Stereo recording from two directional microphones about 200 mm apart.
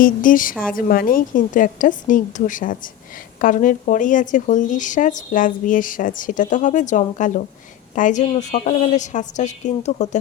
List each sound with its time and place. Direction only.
0.0 s a woman's voice: 40° left (ahead or behind)